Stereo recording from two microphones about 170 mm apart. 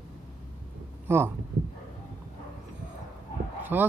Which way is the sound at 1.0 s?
15° right (ahead or behind).